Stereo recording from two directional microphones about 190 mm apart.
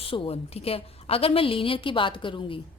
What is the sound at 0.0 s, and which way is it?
A woman's voice, 30° left (ahead or behind).